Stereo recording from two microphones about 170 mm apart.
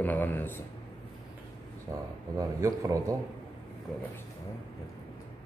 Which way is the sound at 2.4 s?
20° right (ahead or behind).